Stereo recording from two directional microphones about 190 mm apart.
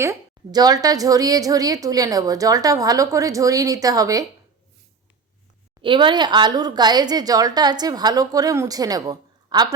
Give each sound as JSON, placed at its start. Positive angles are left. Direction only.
{"t": 0.0, "sound": "a woman's voice", "side_deg": -15}
{"t": 5.8, "sound": "a woman's voice", "side_deg": -25}